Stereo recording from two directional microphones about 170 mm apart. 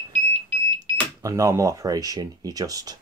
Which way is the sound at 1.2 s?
20° right (ahead or behind).